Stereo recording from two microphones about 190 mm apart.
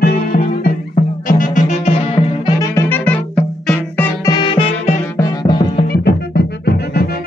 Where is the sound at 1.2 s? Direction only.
45° left (ahead or behind).